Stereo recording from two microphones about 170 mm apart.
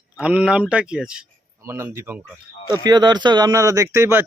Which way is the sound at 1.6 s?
15° right (ahead or behind).